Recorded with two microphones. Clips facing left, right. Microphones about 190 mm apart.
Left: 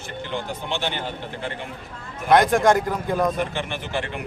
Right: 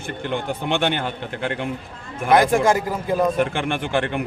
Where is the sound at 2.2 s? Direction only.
Centre (ahead or behind).